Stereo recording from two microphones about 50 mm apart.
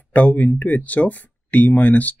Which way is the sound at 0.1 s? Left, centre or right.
Left.